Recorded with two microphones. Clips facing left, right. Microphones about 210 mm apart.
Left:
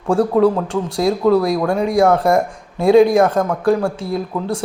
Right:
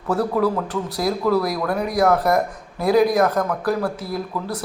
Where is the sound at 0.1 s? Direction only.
30° left (ahead or behind).